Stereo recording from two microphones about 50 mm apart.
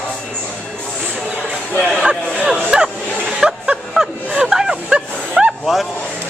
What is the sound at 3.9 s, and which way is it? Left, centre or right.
Gasp, centre.